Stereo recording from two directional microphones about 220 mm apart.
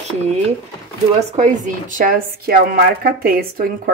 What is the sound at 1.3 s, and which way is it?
Speech, 35° right (ahead or behind).